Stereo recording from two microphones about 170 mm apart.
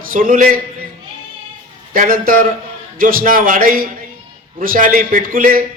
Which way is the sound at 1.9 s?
55° right (ahead or behind).